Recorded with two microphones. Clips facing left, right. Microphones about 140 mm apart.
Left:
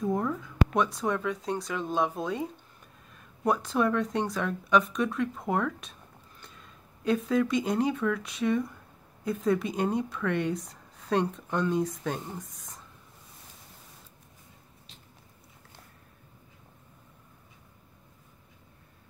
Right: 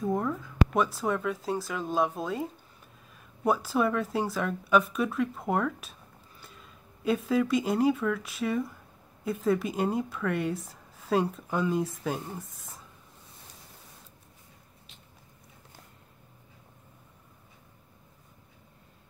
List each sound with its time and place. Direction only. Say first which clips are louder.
0.0 s speech: even; centre (ahead or behind)